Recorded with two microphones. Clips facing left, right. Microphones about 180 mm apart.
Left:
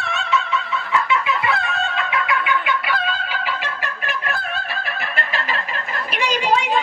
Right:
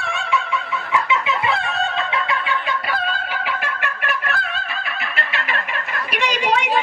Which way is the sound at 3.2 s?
60° right (ahead or behind).